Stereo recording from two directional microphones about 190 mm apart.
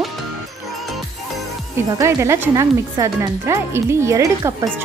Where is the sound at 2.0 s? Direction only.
15° right (ahead or behind).